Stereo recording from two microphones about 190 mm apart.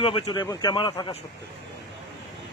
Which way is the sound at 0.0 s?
25° left (ahead or behind).